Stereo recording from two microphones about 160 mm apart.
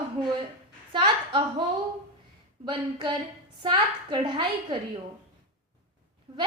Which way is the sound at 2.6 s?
30° right (ahead or behind).